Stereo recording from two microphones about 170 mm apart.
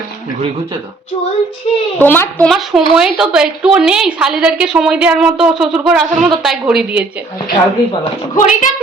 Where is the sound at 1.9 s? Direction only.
10° left (ahead or behind).